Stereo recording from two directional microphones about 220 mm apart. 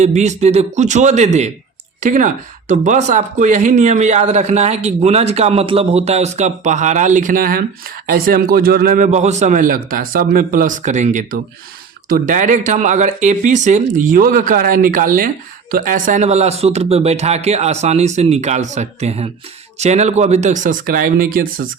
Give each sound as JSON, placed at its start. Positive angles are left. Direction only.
{"t": 0.0, "sound": "speech", "side_deg": -30}